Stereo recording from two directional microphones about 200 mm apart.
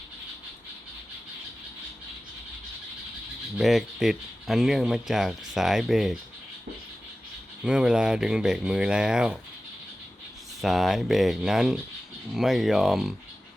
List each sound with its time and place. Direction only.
3.6 s speech: centre (ahead or behind)
7.6 s speech: 5° right (ahead or behind)
10.6 s speech: centre (ahead or behind)